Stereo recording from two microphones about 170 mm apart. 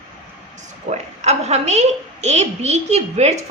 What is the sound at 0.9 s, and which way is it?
A woman's voice, 40° right (ahead or behind).